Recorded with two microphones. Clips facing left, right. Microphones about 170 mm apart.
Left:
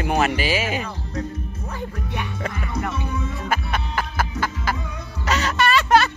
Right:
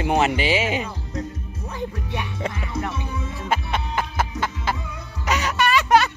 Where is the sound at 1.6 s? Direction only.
15° right (ahead or behind).